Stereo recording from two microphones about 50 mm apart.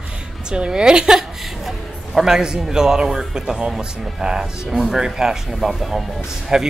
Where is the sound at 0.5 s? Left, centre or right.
Centre.